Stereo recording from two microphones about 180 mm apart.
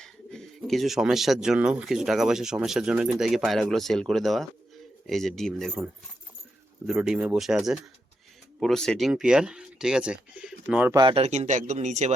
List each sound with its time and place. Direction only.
0.0 s speech: 5° left (ahead or behind)
6.8 s speech: 5° right (ahead or behind)
10.9 s speech: 30° right (ahead or behind)